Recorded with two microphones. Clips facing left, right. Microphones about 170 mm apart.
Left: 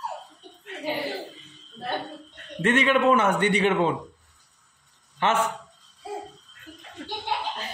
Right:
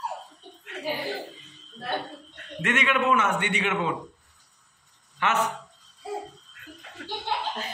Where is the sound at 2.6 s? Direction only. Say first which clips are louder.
Left 5 dB; 30° left (ahead or behind).